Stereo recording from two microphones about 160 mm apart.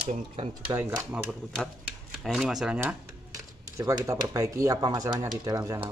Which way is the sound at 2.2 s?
Centre (ahead or behind).